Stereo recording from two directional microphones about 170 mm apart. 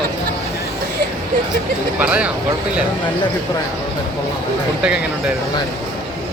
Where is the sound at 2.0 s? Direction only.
5° right (ahead or behind).